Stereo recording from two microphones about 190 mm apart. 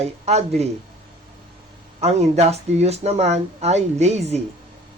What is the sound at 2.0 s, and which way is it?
Speech, 35° right (ahead or behind).